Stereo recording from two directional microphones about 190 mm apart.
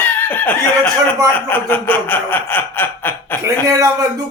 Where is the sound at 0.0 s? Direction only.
10° left (ahead or behind).